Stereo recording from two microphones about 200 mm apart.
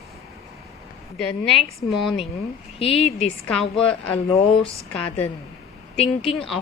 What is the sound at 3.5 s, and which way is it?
Speech, 5° left (ahead or behind).